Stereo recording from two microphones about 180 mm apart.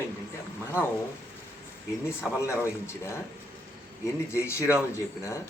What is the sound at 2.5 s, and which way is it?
A man's voice, 15° left (ahead or behind).